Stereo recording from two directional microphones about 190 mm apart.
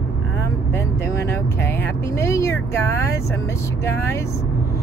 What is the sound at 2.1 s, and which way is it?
Speech, 15° left (ahead or behind).